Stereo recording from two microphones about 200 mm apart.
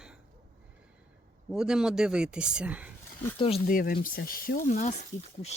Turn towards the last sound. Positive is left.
turn(degrees=40)  # may be behind; listen again after turning